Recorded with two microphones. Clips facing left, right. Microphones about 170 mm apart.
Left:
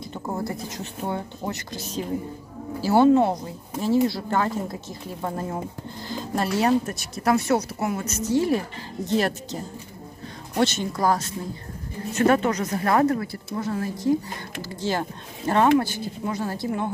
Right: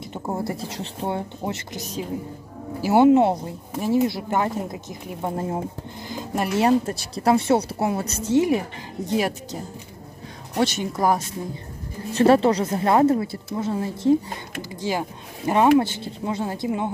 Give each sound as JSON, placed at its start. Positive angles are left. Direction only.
{"t": 0.0, "sound": "speech", "side_deg": -25}
{"t": 2.8, "sound": "speech", "side_deg": -20}
{"t": 8.5, "sound": "speech", "side_deg": -15}
{"t": 12.1, "sound": "speech", "side_deg": -30}
{"t": 14.6, "sound": "speech", "side_deg": -15}
{"t": 15.8, "sound": "speech", "side_deg": -25}